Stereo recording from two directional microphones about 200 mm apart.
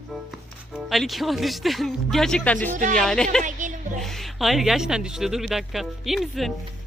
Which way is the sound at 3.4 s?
40° right (ahead or behind).